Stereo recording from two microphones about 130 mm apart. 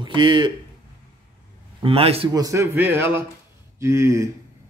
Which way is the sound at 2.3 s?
25° right (ahead or behind).